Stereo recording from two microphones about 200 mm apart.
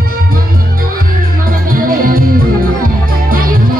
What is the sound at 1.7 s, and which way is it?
Music, 45° right (ahead or behind).